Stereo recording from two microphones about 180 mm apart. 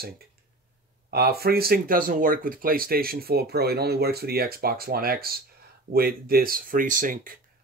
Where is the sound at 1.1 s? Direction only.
60° right (ahead or behind).